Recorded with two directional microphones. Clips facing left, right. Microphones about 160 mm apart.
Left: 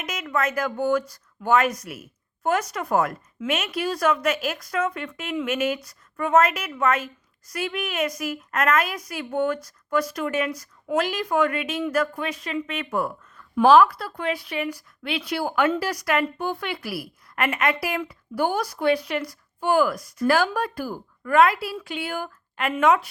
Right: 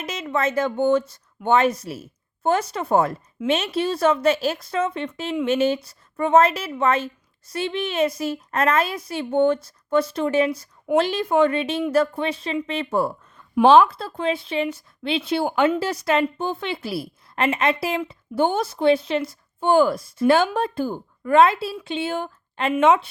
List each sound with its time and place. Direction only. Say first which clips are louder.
0.0 s a woman's voice: right 2 dB; 30° right (ahead or behind)